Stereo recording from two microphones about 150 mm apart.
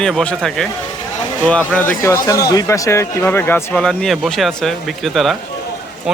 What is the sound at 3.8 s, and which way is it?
Speech, centre (ahead or behind).